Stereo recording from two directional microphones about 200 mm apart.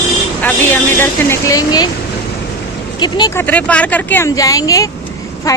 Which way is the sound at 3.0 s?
20° left (ahead or behind).